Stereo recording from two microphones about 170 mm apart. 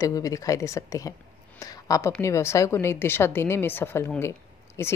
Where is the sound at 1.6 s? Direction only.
20° left (ahead or behind).